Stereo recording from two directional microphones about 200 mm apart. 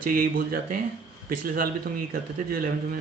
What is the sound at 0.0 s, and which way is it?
Speech, 45° right (ahead or behind).